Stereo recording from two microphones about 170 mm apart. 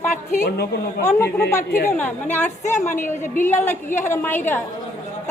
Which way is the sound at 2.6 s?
45° left (ahead or behind).